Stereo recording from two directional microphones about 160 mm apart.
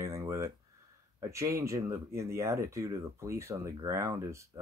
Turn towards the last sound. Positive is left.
turn(degrees=-20)  # may be behind; listen again after turning